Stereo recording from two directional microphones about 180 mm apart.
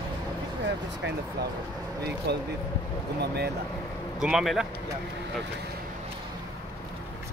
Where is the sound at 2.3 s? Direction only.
65° right (ahead or behind).